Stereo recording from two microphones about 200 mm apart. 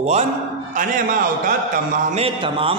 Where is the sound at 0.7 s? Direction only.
40° right (ahead or behind).